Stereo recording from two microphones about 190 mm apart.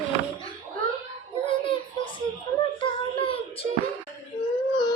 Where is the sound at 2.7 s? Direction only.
30° left (ahead or behind).